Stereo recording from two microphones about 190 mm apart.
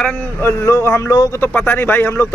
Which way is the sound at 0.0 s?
10° left (ahead or behind).